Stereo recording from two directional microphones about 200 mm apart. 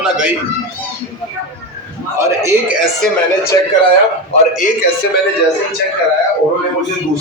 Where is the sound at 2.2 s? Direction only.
15° right (ahead or behind).